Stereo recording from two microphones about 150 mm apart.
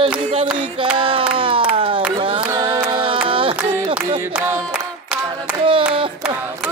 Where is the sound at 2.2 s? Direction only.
35° right (ahead or behind).